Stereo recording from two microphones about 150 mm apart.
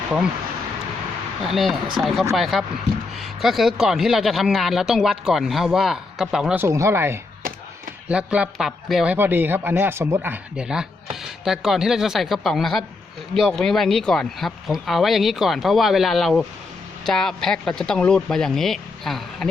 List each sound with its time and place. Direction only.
1.4 s speech: centre (ahead or behind)
6.6 s speech: 20° right (ahead or behind); by 9.1 s centre (ahead or behind)
9.1 s speech: 15° right (ahead or behind)